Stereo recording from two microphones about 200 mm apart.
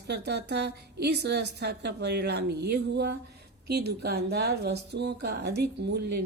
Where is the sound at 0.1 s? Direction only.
55° right (ahead or behind).